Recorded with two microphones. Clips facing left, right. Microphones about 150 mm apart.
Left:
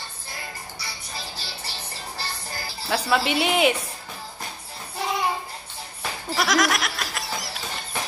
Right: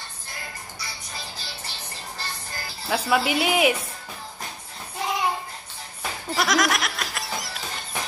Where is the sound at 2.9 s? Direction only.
5° right (ahead or behind).